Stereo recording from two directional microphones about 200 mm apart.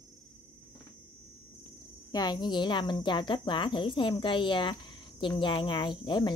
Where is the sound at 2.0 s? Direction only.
20° left (ahead or behind).